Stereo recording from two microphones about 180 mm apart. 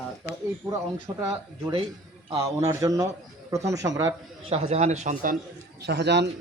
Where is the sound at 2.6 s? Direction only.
15° right (ahead or behind).